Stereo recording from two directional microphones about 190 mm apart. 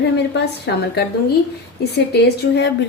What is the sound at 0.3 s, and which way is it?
A woman's voice, 60° left (ahead or behind).